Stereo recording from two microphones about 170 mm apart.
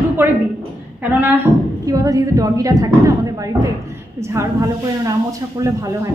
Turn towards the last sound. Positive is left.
turn(degrees=-20)  # may be behind; listen again after turning